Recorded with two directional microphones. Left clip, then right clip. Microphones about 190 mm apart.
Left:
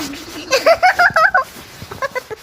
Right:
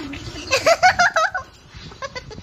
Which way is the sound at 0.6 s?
Centre (ahead or behind).